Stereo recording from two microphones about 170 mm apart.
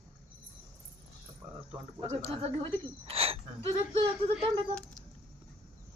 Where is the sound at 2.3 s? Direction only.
35° right (ahead or behind).